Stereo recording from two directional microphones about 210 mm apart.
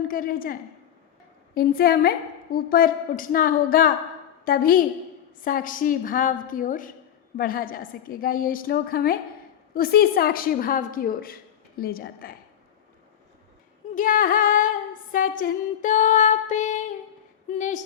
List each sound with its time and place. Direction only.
0.1 s a woman's voice: 45° left (ahead or behind)
5.4 s music: 40° left (ahead or behind)
7.3 s a woman's voice: 45° left (ahead or behind)
13.9 s music: 40° left (ahead or behind)